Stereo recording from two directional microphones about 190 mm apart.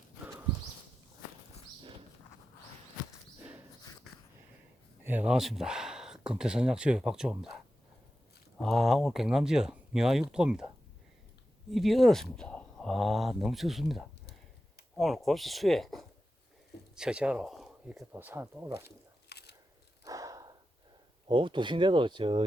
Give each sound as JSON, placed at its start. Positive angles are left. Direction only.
{"t": 5.0, "sound": "speech", "side_deg": -5}
{"t": 8.6, "sound": "speech", "side_deg": 0}
{"t": 11.7, "sound": "speech", "side_deg": 0}
{"t": 18.9, "sound": "a sound", "side_deg": 60}
{"t": 20.1, "sound": "a sound", "side_deg": -20}
{"t": 21.2, "sound": "speech", "side_deg": -25}